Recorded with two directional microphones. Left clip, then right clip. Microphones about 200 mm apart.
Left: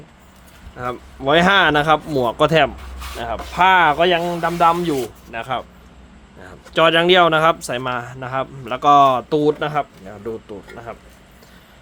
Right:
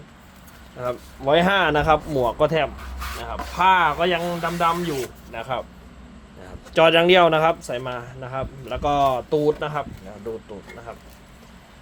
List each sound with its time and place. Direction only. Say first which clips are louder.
0.8 s speech: left 2 dB; 30° left (ahead or behind)
6.4 s speech: left 1 dB; 15° left (ahead or behind)
7.6 s speech: left 5 dB; 30° left (ahead or behind)
10.9 s speech: left 5 dB; 35° left (ahead or behind)